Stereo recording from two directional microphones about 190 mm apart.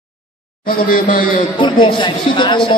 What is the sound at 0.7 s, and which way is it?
Speech, 50° left (ahead or behind).